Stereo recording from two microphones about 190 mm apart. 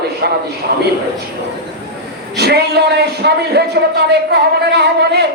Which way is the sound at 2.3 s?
55° right (ahead or behind).